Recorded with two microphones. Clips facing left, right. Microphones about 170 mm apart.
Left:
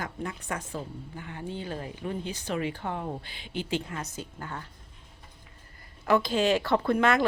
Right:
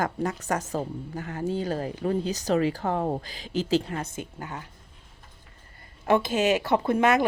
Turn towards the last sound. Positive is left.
turn(degrees=-20)  # may be behind; listen again after turning